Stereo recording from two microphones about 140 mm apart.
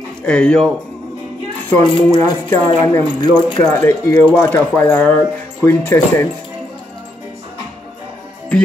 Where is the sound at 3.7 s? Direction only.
15° left (ahead or behind).